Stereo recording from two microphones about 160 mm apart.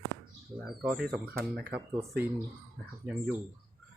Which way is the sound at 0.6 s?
Centre (ahead or behind).